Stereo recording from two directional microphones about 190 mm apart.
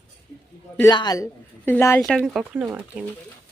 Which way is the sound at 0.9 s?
20° left (ahead or behind).